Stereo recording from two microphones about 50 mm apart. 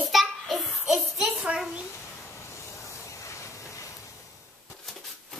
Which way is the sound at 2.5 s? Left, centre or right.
Left.